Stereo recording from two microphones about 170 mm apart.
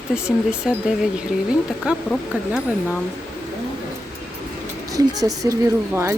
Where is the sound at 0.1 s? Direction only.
5° right (ahead or behind).